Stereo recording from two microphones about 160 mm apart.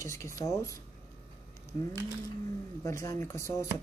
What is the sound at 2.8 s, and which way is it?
Speech, 20° left (ahead or behind).